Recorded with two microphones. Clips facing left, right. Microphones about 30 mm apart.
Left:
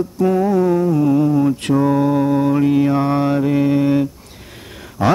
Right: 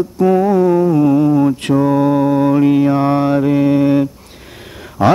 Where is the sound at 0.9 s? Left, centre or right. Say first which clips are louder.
Right 3 dB; right.